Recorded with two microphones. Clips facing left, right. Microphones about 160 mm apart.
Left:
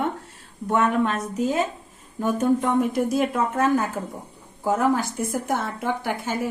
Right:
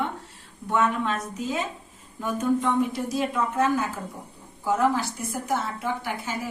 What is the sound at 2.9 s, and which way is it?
Speech, 55° left (ahead or behind).